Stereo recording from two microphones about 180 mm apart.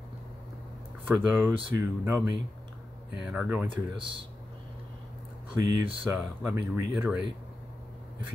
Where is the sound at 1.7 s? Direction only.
10° right (ahead or behind).